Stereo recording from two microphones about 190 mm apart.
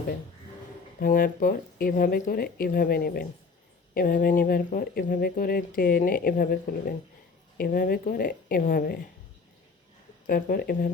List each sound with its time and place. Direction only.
0.9 s speech: 45° left (ahead or behind)
10.2 s speech: 50° left (ahead or behind)